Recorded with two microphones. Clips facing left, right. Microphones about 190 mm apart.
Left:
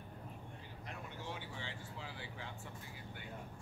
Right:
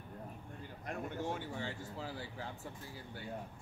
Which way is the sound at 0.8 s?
50° right (ahead or behind).